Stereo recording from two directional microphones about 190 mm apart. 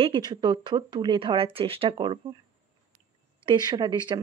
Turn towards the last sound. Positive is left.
turn(degrees=-20)  # may be behind; listen again after turning